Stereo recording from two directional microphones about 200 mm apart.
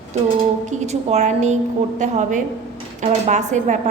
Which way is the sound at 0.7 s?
35° right (ahead or behind).